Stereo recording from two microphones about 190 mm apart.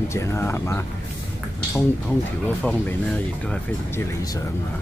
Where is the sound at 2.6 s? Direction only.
5° left (ahead or behind).